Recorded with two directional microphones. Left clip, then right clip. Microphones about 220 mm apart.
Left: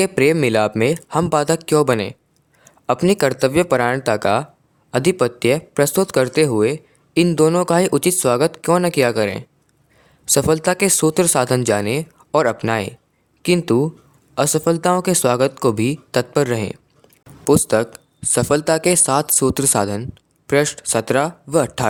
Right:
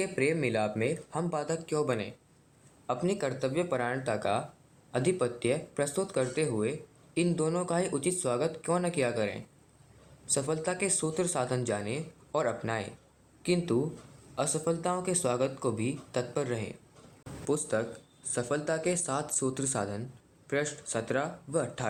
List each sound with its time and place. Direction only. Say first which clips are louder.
0.0 s speech: left 14 dB; 55° left (ahead or behind)